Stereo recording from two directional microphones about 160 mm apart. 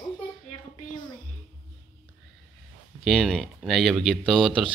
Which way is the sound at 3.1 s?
Centre (ahead or behind).